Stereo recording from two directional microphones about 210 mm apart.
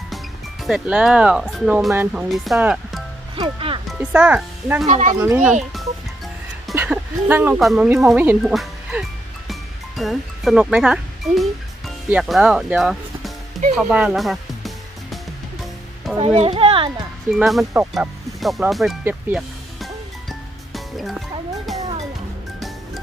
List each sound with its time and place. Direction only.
0.6 s speech: 5° right (ahead or behind)
3.3 s speech: 25° right (ahead or behind)
3.9 s speech: 5° right (ahead or behind)
4.9 s speech: 35° right (ahead or behind)
5.2 s speech: 10° right (ahead or behind)
16.1 s speech: 25° right (ahead or behind)
17.3 s speech: centre (ahead or behind)
20.7 s music: centre (ahead or behind)